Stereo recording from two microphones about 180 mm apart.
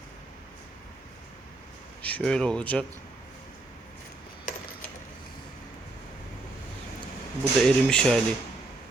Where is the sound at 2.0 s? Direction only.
5° left (ahead or behind).